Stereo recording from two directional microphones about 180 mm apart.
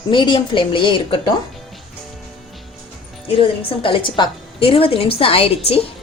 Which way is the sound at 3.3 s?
30° left (ahead or behind).